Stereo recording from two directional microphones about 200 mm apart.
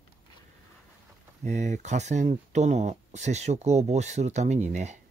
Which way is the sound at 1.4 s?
35° right (ahead or behind).